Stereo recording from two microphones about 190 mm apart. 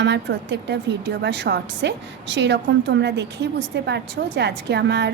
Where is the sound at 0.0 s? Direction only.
70° right (ahead or behind).